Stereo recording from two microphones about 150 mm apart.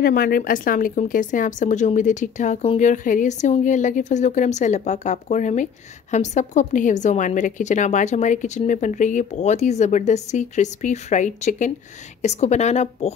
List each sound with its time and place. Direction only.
0.0 s a woman's voice: 75° left (ahead or behind); by 13.1 s 45° left (ahead or behind)